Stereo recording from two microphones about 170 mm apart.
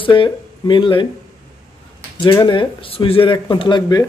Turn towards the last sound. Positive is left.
turn(degrees=25)  # may be behind; listen again after turning